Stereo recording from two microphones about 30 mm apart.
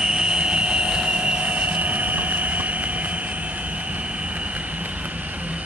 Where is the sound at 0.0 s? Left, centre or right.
Right.